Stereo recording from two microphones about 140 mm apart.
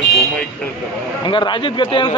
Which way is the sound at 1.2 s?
35° left (ahead or behind).